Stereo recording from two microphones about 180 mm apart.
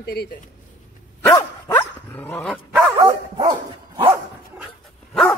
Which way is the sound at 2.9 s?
25° right (ahead or behind).